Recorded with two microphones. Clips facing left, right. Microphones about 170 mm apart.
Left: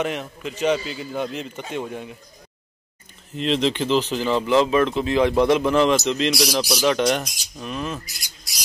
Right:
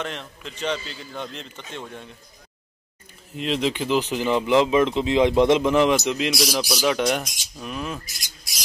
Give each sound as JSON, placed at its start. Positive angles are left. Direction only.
{"t": 0.0, "sound": "speech", "side_deg": 10}
{"t": 3.3, "sound": "speech", "side_deg": -5}